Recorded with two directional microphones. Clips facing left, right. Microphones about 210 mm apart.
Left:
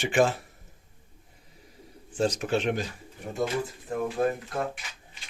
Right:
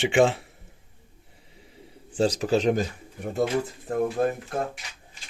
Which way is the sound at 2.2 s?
35° right (ahead or behind).